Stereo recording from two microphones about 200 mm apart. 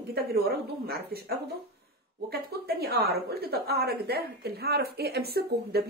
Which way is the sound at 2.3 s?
50° right (ahead or behind).